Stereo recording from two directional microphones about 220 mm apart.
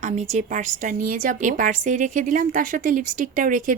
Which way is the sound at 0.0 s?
35° right (ahead or behind).